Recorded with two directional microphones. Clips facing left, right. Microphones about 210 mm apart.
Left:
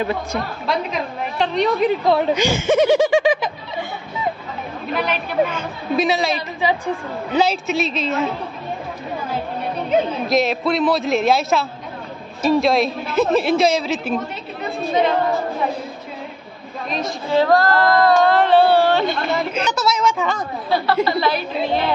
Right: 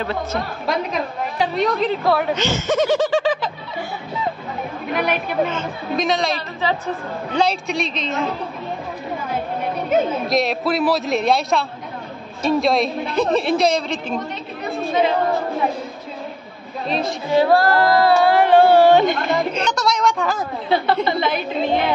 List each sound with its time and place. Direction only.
0.0 s speech: 15° left (ahead or behind)
0.9 s a woman's voice: 5° right (ahead or behind)
1.8 s speech: 15° left (ahead or behind)
4.9 s a woman's voice: 55° right (ahead or behind)
5.5 s a woman's voice: 10° left (ahead or behind)
7.3 s a woman's voice: 5° left (ahead or behind)
10.2 s a woman's voice: centre (ahead or behind)
17.3 s speech: 10° right (ahead or behind)
19.5 s a woman's voice: 5° left (ahead or behind)
20.7 s a woman's voice: 20° right (ahead or behind)